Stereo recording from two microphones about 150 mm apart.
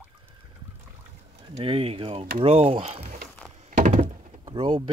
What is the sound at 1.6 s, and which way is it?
Speech, 40° right (ahead or behind).